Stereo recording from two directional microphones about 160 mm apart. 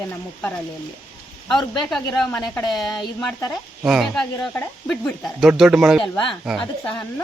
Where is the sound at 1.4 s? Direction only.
Centre (ahead or behind).